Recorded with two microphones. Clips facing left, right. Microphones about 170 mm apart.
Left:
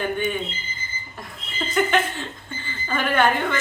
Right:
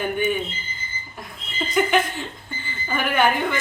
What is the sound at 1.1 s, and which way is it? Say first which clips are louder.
Chuckle: right 1 dB; 5° right (ahead or behind).